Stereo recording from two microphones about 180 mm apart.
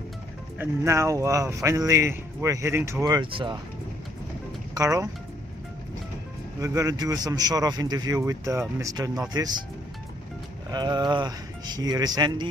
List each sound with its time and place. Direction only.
0.6 s speech: 15° right (ahead or behind)
4.7 s a man's voice: 20° right (ahead or behind)
6.6 s a man's voice: 20° right (ahead or behind)
10.7 s a man's voice: 25° right (ahead or behind)